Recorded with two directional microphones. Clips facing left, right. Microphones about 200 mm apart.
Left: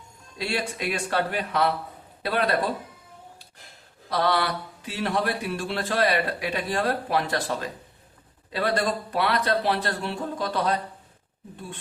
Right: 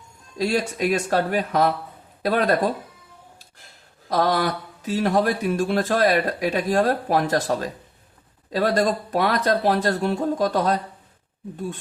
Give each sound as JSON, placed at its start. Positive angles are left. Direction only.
{"t": 0.3, "sound": "speech", "side_deg": -40}
{"t": 4.1, "sound": "speech", "side_deg": -45}